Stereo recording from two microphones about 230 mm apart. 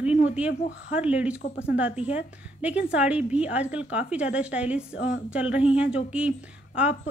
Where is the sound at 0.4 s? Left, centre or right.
Centre.